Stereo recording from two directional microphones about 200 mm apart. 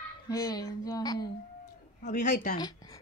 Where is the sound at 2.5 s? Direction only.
20° left (ahead or behind).